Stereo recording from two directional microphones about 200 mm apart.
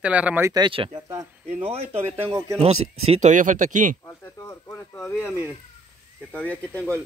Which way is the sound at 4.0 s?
15° left (ahead or behind).